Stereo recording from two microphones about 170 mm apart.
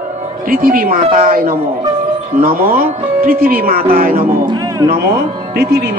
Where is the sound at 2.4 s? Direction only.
55° right (ahead or behind).